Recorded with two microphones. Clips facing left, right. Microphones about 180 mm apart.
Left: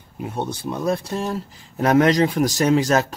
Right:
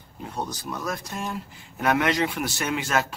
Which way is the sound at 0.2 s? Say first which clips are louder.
Left 6 dB; 25° left (ahead or behind).